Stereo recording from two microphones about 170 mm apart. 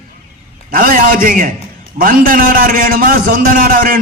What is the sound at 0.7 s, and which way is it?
A man's voice, 55° right (ahead or behind).